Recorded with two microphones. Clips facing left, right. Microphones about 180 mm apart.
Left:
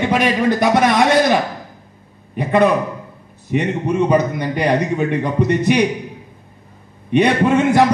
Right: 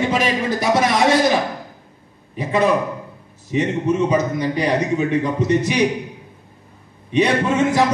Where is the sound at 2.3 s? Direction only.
60° left (ahead or behind).